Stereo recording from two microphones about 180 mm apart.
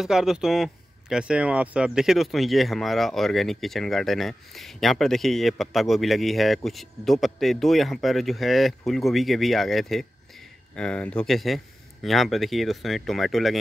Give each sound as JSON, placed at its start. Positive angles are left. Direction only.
{"t": 0.0, "sound": "speech", "side_deg": -5}